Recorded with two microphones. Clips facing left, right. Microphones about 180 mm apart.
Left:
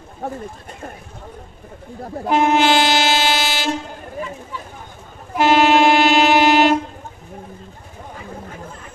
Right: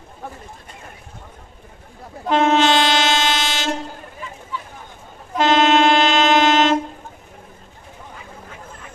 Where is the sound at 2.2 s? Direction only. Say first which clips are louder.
Even; 10° left (ahead or behind).